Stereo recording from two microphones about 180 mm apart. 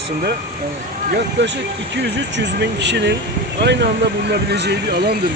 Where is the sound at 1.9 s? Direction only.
75° right (ahead or behind).